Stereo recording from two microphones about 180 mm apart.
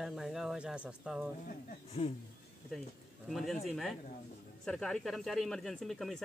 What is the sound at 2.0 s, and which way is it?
Speech, 30° left (ahead or behind).